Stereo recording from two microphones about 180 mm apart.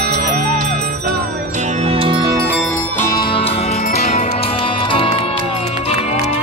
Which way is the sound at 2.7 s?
15° left (ahead or behind).